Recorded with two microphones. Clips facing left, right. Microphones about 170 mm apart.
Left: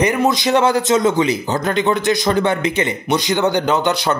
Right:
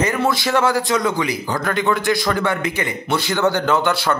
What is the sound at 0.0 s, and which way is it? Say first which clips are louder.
Speech: left 3 dB; 20° left (ahead or behind).